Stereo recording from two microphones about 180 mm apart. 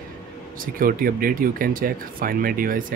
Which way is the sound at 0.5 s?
50° right (ahead or behind).